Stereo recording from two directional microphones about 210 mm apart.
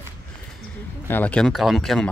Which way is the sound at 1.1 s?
5° left (ahead or behind).